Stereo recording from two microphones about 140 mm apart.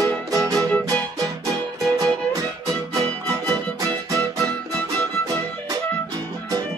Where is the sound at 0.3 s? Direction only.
25° right (ahead or behind).